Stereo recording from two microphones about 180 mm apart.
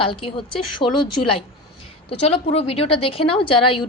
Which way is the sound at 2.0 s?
35° left (ahead or behind).